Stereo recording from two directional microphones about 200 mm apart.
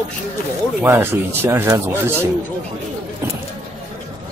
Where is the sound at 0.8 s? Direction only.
10° right (ahead or behind).